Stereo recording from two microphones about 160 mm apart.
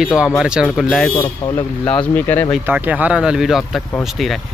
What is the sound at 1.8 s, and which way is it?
Speech, 10° left (ahead or behind).